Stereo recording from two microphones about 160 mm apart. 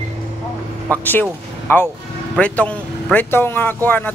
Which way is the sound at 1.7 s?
15° left (ahead or behind).